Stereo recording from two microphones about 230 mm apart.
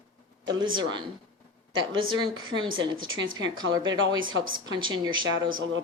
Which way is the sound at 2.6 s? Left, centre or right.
Right.